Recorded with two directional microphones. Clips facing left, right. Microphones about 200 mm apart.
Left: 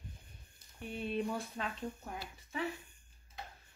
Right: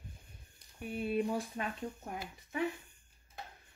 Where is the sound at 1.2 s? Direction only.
15° right (ahead or behind).